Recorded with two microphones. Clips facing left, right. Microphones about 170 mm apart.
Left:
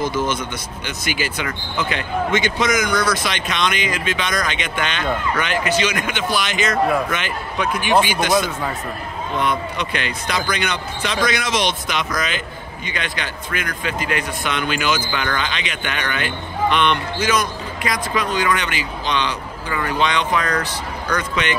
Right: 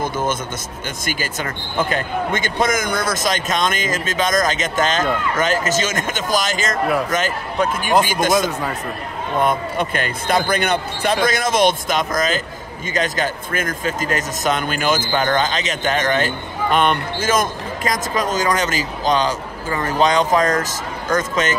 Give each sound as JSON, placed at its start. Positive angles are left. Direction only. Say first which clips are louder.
{"t": 0.0, "sound": "speech", "louder": "even", "side_deg": -50}